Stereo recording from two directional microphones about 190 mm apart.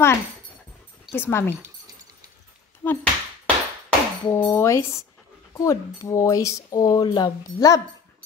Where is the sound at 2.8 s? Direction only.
10° left (ahead or behind).